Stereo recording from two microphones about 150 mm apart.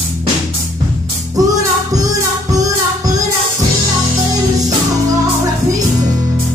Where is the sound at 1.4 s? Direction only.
25° right (ahead or behind).